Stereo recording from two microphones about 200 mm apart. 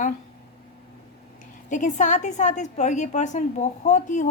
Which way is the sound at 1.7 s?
40° left (ahead or behind).